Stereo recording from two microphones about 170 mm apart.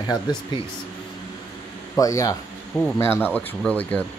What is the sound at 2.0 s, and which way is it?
Speech, 20° left (ahead or behind).